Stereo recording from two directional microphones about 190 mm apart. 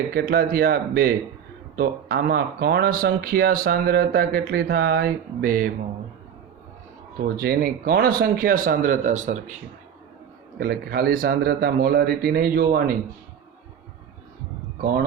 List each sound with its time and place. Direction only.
0.1 s speech: 50° right (ahead or behind)
7.3 s speech: 55° right (ahead or behind)
10.6 s speech: 55° right (ahead or behind)
14.8 s speech: 50° right (ahead or behind)